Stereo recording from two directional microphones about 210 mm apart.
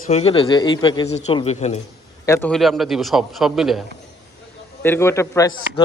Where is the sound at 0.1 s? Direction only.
30° left (ahead or behind).